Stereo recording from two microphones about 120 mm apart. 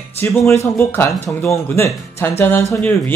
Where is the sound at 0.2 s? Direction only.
20° left (ahead or behind).